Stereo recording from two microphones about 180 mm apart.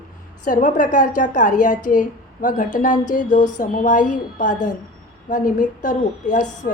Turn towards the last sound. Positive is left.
turn(degrees=45)  # may be behind; listen again after turning